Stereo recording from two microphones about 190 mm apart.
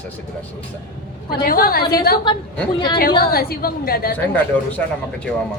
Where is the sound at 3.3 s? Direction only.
50° left (ahead or behind).